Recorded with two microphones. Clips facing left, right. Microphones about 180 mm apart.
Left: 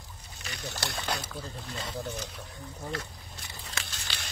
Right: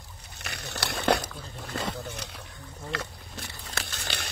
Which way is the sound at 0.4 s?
70° right (ahead or behind).